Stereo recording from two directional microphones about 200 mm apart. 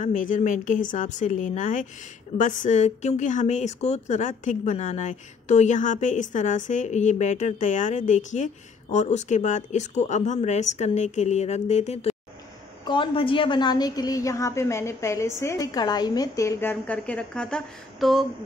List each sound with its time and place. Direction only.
0.0 s a woman's voice: 40° left (ahead or behind); by 18.2 s centre (ahead or behind)